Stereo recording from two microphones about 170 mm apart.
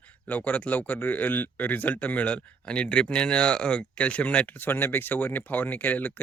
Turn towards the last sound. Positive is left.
turn(degrees=10)  # may be behind; listen again after turning